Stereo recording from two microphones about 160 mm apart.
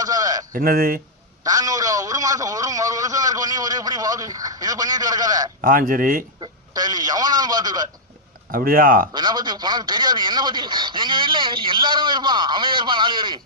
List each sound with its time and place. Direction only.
0.0 s a sound: 25° right (ahead or behind)
0.5 s speech: 65° right (ahead or behind)
1.5 s a man's voice: 25° right (ahead or behind)
5.6 s speech: 60° right (ahead or behind)
6.4 s a man's voice: 25° right (ahead or behind)
8.4 s speech: 65° right (ahead or behind)
9.1 s a man's voice: 25° right (ahead or behind)